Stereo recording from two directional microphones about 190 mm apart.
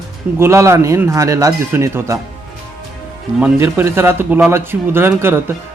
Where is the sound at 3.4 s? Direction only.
10° right (ahead or behind).